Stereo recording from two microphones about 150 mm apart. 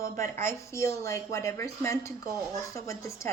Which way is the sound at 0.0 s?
20° left (ahead or behind).